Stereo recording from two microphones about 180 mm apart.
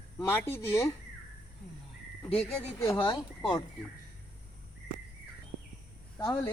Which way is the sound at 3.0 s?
25° left (ahead or behind).